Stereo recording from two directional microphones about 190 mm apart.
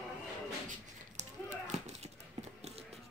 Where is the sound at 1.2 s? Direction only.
40° right (ahead or behind).